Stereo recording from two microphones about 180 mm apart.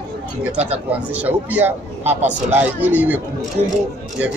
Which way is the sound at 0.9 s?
10° right (ahead or behind).